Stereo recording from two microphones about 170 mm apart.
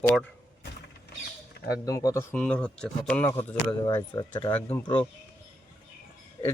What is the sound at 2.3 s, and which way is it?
Speech, 5° left (ahead or behind).